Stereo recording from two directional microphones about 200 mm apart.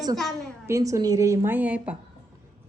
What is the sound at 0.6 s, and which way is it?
Speech, 15° right (ahead or behind).